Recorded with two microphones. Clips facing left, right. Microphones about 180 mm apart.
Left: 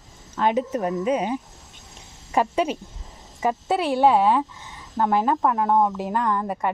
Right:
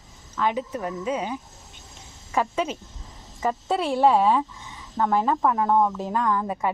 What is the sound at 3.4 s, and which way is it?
Speech, 5° left (ahead or behind).